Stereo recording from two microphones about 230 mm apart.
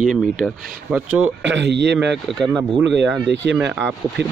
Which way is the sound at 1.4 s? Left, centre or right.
Right.